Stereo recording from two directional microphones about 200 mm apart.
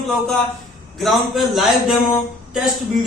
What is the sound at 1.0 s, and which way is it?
A man's voice, centre (ahead or behind).